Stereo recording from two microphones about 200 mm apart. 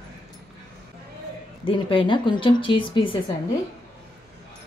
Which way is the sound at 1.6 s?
25° left (ahead or behind).